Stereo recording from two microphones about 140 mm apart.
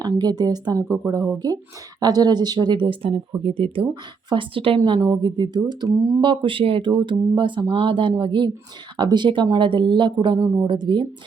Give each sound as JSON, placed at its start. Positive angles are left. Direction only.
{"t": 0.0, "sound": "speech", "side_deg": -30}
{"t": 4.8, "sound": "speech", "side_deg": -30}
{"t": 6.2, "sound": "speech", "side_deg": -35}
{"t": 10.7, "sound": "speech", "side_deg": -35}